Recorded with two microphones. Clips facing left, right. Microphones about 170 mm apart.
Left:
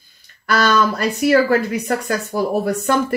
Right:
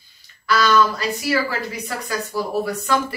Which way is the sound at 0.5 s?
55° left (ahead or behind).